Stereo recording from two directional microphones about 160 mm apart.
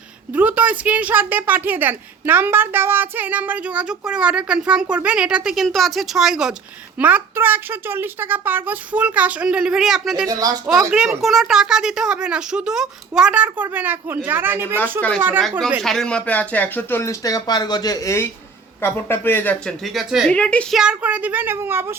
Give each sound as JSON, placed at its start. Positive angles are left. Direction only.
{"t": 0.3, "sound": "a woman's voice", "side_deg": -10}
{"t": 10.2, "sound": "speech", "side_deg": -25}
{"t": 10.9, "sound": "a woman's voice", "side_deg": -5}
{"t": 15.8, "sound": "speech", "side_deg": 0}
{"t": 19.8, "sound": "a woman's voice", "side_deg": 0}